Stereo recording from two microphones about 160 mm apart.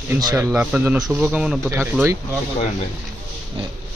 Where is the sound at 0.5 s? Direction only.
10° right (ahead or behind).